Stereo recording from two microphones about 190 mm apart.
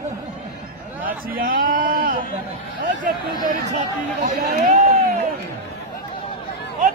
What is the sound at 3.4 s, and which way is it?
Speech, 40° right (ahead or behind).